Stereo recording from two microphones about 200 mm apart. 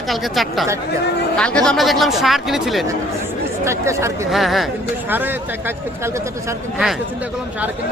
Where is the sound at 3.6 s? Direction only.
15° right (ahead or behind).